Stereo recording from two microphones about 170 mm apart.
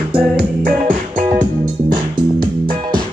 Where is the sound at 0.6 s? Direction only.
50° right (ahead or behind).